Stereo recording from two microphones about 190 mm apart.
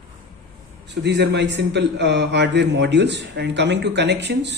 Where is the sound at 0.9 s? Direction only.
60° right (ahead or behind).